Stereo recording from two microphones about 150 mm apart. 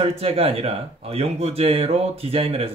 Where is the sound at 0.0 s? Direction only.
40° right (ahead or behind).